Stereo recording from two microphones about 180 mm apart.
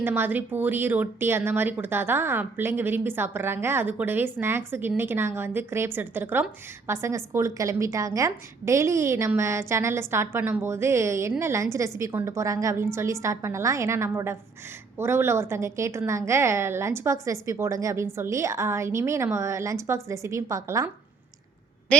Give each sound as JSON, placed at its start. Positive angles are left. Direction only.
{"t": 0.0, "sound": "speech", "side_deg": -10}